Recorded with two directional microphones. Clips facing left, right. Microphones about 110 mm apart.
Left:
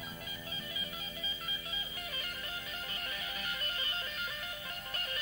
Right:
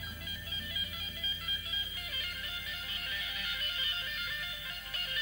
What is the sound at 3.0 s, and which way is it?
Music, 40° left (ahead or behind).